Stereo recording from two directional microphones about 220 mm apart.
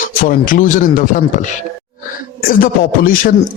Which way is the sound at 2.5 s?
40° left (ahead or behind).